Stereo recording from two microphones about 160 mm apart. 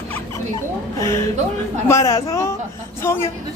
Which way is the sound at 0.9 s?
20° left (ahead or behind).